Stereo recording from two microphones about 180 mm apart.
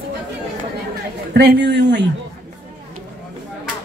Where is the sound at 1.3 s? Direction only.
70° right (ahead or behind).